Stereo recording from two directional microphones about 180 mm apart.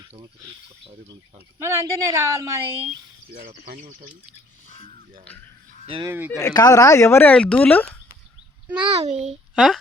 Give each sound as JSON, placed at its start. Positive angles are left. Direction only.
{"t": 1.6, "sound": "a woman's voice", "side_deg": -15}
{"t": 5.8, "sound": "speech", "side_deg": -30}
{"t": 6.1, "sound": "a woman's voice", "side_deg": -10}
{"t": 6.3, "sound": "speech", "side_deg": 20}
{"t": 8.8, "sound": "a child's voice", "side_deg": -35}
{"t": 9.2, "sound": "speech", "side_deg": 0}